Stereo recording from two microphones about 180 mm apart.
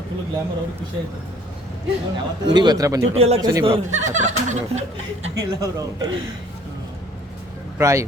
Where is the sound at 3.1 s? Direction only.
35° right (ahead or behind).